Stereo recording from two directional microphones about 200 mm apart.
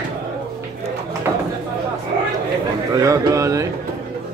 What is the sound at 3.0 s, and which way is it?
Speech, 15° right (ahead or behind).